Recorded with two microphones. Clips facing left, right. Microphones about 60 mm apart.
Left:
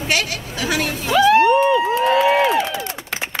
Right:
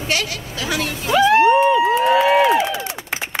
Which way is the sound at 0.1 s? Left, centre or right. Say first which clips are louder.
Left 1 dB; left.